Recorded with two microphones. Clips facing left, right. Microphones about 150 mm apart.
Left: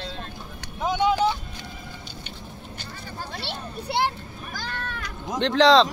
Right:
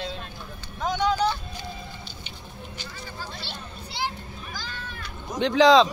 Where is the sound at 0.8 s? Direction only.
25° left (ahead or behind).